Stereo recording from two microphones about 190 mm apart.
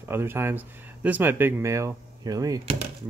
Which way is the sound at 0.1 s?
10° right (ahead or behind).